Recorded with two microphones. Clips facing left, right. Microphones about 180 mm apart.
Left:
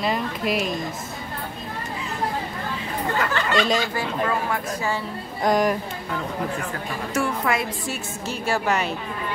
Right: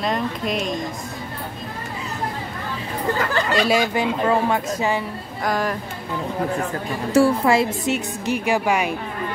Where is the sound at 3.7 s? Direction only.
15° right (ahead or behind).